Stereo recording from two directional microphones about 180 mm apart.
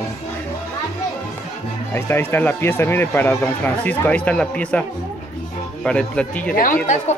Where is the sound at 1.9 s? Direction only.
10° left (ahead or behind).